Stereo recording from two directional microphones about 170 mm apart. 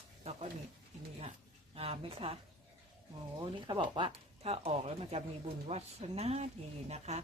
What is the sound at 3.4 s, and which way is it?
Speech, 25° right (ahead or behind).